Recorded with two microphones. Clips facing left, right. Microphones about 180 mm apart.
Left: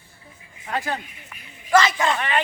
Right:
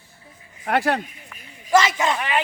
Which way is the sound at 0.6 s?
75° right (ahead or behind).